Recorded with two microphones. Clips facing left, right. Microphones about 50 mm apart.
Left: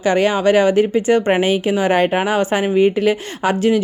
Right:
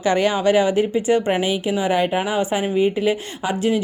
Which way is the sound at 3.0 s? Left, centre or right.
Left.